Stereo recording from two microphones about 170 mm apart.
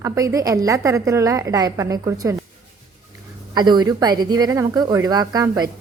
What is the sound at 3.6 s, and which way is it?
A woman's voice, 25° right (ahead or behind).